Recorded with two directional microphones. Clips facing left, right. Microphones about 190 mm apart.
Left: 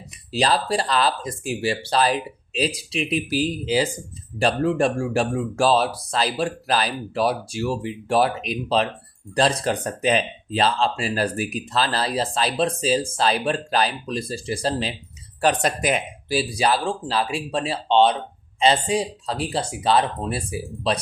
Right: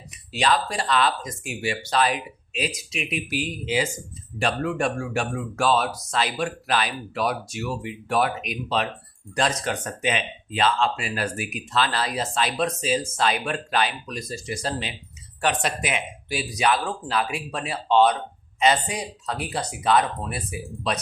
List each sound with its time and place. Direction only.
0.3 s speech: 35° left (ahead or behind)